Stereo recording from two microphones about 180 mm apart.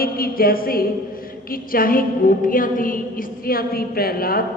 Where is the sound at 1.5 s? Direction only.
50° left (ahead or behind).